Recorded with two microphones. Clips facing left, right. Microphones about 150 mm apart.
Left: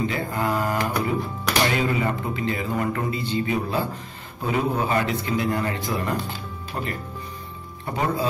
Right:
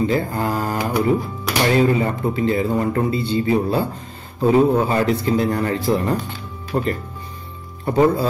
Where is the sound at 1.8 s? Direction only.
35° right (ahead or behind).